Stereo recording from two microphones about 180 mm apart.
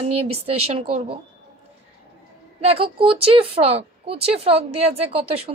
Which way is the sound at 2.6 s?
35° right (ahead or behind).